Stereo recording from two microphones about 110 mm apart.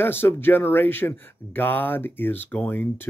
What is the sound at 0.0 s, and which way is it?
Speech, 20° left (ahead or behind).